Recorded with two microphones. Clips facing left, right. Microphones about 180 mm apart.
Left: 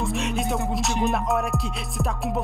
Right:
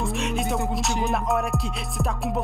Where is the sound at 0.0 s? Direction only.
Centre (ahead or behind).